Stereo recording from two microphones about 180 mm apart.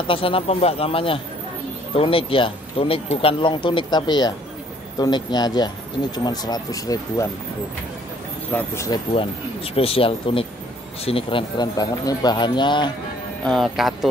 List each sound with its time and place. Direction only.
0.1 s speech: 30° left (ahead or behind)
8.5 s speech: 15° left (ahead or behind)
9.8 s speech: 30° left (ahead or behind)
13.4 s speech: centre (ahead or behind)